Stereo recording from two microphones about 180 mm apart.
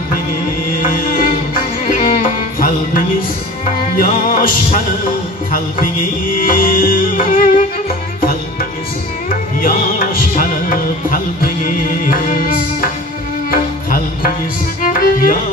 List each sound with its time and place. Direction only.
0.8 s music: 50° left (ahead or behind)
6.3 s music: 50° left (ahead or behind)
9.3 s music: 50° left (ahead or behind)
14.8 s violin: 50° left (ahead or behind)